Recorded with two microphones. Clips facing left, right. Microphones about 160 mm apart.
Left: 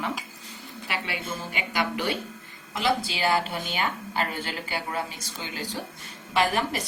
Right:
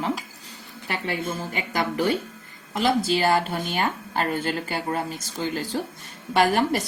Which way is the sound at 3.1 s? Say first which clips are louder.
Right 4 dB; 45° right (ahead or behind).